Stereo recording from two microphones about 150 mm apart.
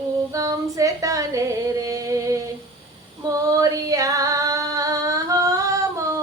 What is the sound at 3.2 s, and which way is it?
Singing, 25° right (ahead or behind).